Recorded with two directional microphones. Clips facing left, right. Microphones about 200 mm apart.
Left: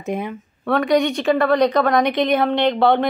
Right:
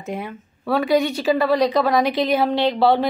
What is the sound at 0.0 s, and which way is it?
Speech, 20° left (ahead or behind).